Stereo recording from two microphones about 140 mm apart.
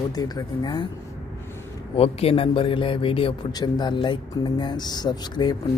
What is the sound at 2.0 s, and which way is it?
Speech, 45° left (ahead or behind).